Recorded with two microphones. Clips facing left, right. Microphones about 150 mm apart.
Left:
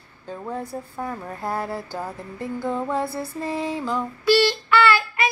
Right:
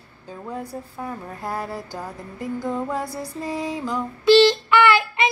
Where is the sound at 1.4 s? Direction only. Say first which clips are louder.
Left 2 dB; 30° left (ahead or behind).